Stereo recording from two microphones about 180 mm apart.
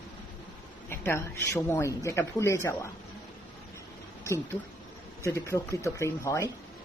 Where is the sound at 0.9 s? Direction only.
15° left (ahead or behind).